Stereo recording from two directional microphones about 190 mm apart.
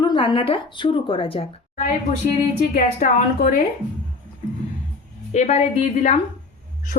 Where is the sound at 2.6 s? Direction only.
45° left (ahead or behind).